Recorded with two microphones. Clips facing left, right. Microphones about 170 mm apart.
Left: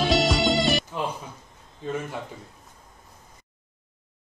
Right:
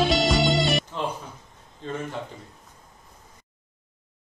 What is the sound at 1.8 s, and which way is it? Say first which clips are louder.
Speech: left 2 dB; 10° left (ahead or behind).